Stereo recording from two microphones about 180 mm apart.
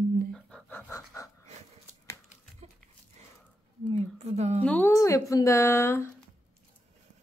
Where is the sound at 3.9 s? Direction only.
35° right (ahead or behind).